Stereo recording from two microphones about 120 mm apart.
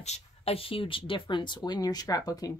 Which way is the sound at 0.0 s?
60° left (ahead or behind).